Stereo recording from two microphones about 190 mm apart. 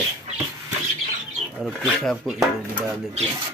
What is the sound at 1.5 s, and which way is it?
Speech, centre (ahead or behind).